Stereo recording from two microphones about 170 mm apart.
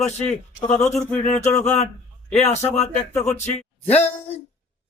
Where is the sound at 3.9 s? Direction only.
40° left (ahead or behind).